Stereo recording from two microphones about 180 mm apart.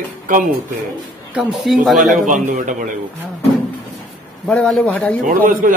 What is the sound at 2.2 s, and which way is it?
Speech, 45° right (ahead or behind).